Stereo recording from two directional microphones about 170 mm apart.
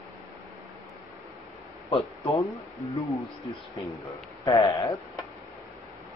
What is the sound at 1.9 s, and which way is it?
Speech, 35° left (ahead or behind).